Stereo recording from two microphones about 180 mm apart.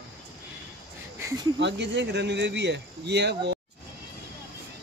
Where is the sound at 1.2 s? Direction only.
15° right (ahead or behind).